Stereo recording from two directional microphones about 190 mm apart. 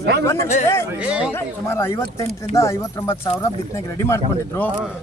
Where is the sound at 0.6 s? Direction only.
15° left (ahead or behind).